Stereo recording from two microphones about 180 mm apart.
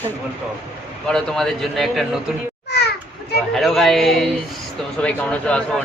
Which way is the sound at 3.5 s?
Centre (ahead or behind).